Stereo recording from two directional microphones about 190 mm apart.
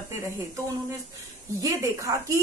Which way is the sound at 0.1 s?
15° right (ahead or behind).